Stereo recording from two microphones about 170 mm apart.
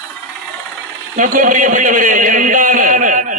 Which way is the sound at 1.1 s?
50° right (ahead or behind).